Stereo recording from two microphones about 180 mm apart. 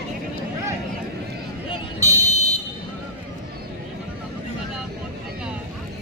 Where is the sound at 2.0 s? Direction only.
20° right (ahead or behind).